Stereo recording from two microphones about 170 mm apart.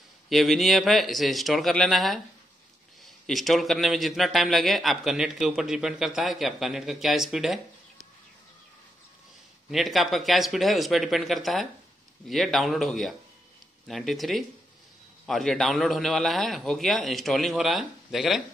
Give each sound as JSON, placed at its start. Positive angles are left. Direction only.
{"t": 0.3, "sound": "a man's voice", "side_deg": 0}
{"t": 3.3, "sound": "a man's voice", "side_deg": 0}
{"t": 9.7, "sound": "a man's voice", "side_deg": 0}